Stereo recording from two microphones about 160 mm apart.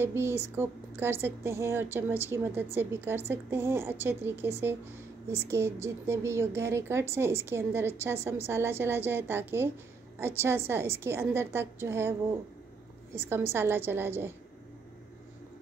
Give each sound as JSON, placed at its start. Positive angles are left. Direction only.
{"t": 0.0, "sound": "a woman's voice", "side_deg": -15}
{"t": 5.5, "sound": "a woman's voice", "side_deg": -15}
{"t": 13.5, "sound": "a woman's voice", "side_deg": -15}